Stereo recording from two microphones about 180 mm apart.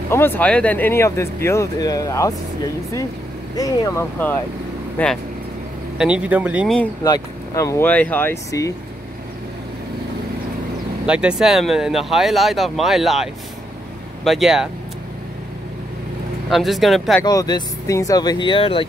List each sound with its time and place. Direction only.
0.1 s speech: 10° left (ahead or behind)
5.9 s speech: 5° right (ahead or behind)
7.0 s speech: 20° left (ahead or behind)
11.1 s speech: 5° right (ahead or behind)
16.4 s speech: centre (ahead or behind)
17.2 s speech: 20° left (ahead or behind)